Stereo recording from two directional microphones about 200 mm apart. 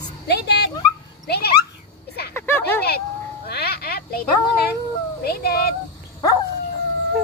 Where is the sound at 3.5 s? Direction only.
50° left (ahead or behind).